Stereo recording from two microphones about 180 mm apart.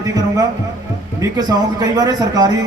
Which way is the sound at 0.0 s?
20° right (ahead or behind).